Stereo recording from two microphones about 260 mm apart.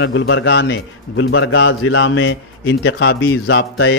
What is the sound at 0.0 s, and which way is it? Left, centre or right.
A man's voice, left.